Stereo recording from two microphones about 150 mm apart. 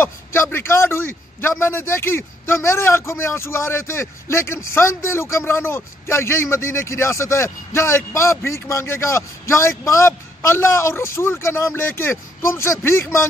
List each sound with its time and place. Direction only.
0.0 s a man's voice: 15° left (ahead or behind)